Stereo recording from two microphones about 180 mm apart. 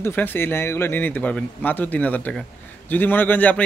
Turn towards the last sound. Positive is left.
turn(degrees=10)  # may be behind; listen again after turning